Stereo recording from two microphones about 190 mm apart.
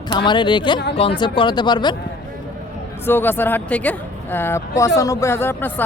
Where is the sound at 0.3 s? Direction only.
25° left (ahead or behind).